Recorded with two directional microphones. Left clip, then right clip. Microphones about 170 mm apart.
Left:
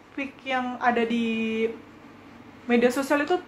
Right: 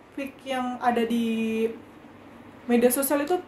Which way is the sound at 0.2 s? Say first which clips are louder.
Left 2 dB; 5° right (ahead or behind).